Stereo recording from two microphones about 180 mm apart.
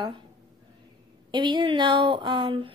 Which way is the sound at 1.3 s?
25° right (ahead or behind).